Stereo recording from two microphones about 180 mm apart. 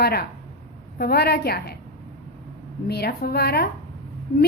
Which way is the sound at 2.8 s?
60° left (ahead or behind).